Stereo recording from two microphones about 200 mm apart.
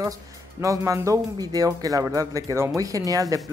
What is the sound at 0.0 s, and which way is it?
Speech, 15° right (ahead or behind).